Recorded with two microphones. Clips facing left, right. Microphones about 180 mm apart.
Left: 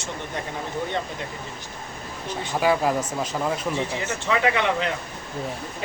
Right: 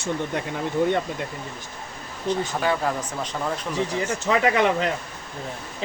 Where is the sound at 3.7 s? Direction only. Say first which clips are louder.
Right 2 dB; 40° right (ahead or behind).